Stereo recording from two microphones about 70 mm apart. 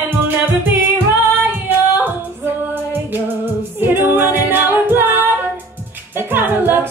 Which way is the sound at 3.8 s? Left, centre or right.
Right.